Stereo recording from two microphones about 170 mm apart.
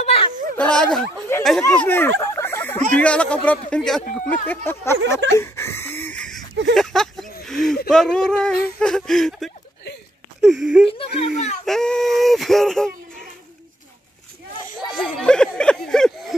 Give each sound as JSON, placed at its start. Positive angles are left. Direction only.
{"t": 0.0, "sound": "a sound", "side_deg": 35}
{"t": 0.6, "sound": "speech", "side_deg": 5}
{"t": 5.3, "sound": "wheeze", "side_deg": 15}
{"t": 6.7, "sound": "speech", "side_deg": 0}
{"t": 10.9, "sound": "speech", "side_deg": 35}
{"t": 11.6, "sound": "speech", "side_deg": 5}
{"t": 14.8, "sound": "a sound", "side_deg": 30}
{"t": 15.1, "sound": "speech", "side_deg": 5}